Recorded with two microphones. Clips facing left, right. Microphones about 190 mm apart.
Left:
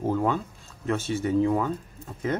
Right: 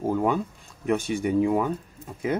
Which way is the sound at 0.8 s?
15° right (ahead or behind).